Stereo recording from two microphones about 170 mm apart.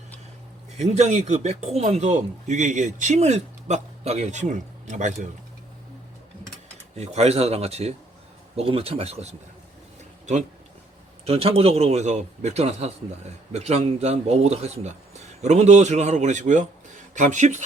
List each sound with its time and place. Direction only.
0.8 s a man's voice: 40° right (ahead or behind)
6.9 s a man's voice: 40° right (ahead or behind)
11.3 s a man's voice: 35° right (ahead or behind)